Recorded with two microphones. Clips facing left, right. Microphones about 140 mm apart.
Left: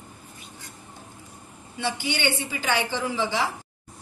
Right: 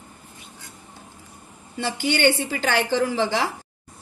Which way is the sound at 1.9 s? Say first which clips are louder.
Right 11 dB; 60° right (ahead or behind).